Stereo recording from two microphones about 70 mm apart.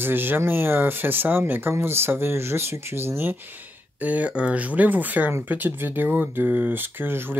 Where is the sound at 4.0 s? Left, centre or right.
Right.